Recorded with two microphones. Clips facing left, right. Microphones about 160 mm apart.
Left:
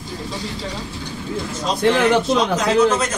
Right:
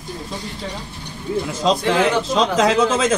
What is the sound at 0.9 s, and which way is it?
Vehicle, 90° left.